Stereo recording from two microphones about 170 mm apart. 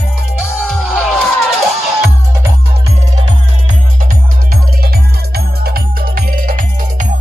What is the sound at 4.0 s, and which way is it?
Music, 55° right (ahead or behind).